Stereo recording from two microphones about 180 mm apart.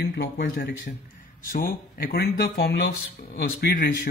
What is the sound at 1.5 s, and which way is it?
A man's voice, 55° left (ahead or behind).